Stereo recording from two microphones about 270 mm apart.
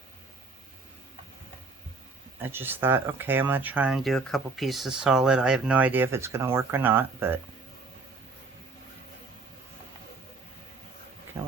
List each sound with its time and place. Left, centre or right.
2.4 s speech: centre